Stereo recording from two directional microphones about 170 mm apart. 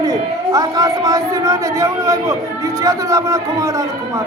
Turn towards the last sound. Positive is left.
turn(degrees=-20)  # may be behind; listen again after turning